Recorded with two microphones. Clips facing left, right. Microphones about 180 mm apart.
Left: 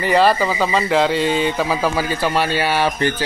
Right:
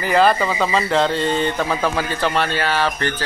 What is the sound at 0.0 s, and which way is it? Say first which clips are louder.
Speech: left 1 dB; centre (ahead or behind).